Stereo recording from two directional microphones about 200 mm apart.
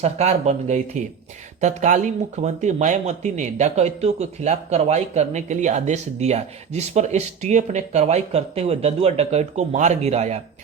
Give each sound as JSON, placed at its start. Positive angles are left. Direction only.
{"t": 0.0, "sound": "speech", "side_deg": -35}